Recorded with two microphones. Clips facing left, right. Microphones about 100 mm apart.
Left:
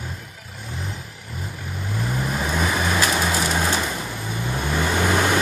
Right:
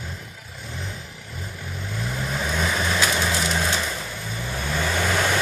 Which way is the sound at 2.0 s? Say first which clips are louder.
Left 3 dB; 10° left (ahead or behind).